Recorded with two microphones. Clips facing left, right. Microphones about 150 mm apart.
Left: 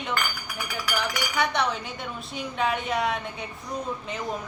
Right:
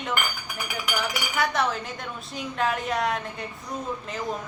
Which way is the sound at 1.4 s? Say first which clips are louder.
Right 1 dB; centre (ahead or behind).